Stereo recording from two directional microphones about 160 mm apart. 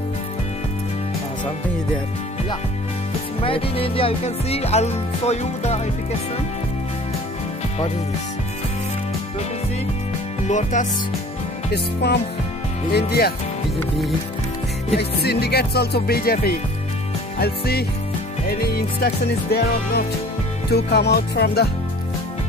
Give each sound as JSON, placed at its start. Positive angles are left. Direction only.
{"t": 3.4, "sound": "music", "side_deg": 35}
{"t": 10.5, "sound": "speech", "side_deg": 50}
{"t": 11.7, "sound": "music", "side_deg": 90}
{"t": 15.0, "sound": "music", "side_deg": 90}
{"t": 17.4, "sound": "music", "side_deg": 80}
{"t": 20.7, "sound": "music", "side_deg": 90}